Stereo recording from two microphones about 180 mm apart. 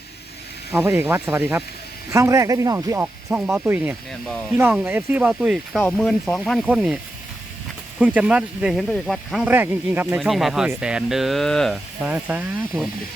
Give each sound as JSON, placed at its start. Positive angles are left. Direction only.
{"t": 0.7, "sound": "speech", "side_deg": -15}
{"t": 10.2, "sound": "speech", "side_deg": 0}
{"t": 12.0, "sound": "speech", "side_deg": -10}